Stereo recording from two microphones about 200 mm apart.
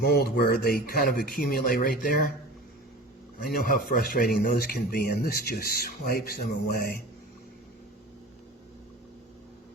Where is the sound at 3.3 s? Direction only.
45° left (ahead or behind).